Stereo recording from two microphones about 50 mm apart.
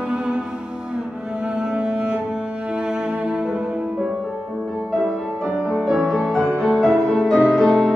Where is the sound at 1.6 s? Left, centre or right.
Centre.